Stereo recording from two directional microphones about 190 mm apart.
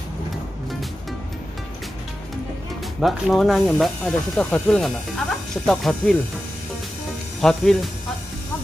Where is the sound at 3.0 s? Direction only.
Centre (ahead or behind).